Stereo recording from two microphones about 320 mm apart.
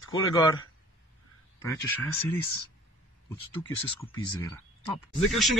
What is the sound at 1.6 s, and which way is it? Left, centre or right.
Speech, centre.